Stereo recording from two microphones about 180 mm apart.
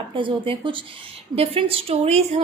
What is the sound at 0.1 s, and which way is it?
A woman's voice, 30° right (ahead or behind).